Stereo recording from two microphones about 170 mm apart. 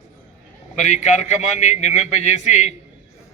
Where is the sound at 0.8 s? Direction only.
45° left (ahead or behind).